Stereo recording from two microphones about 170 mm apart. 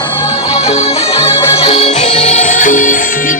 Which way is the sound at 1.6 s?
40° left (ahead or behind).